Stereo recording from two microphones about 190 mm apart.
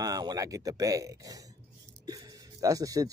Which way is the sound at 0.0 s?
20° right (ahead or behind).